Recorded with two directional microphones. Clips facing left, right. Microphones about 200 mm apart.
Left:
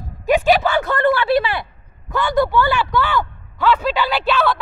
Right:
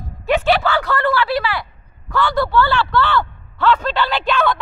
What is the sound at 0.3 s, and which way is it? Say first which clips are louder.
Speech: left 1 dB; 15° left (ahead or behind).